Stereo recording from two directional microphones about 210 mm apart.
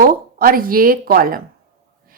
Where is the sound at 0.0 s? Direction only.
45° right (ahead or behind).